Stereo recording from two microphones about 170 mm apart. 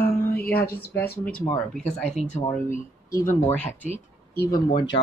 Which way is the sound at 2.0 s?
40° left (ahead or behind).